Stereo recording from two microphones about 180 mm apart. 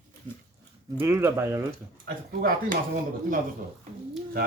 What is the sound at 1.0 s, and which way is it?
Speech, 15° right (ahead or behind).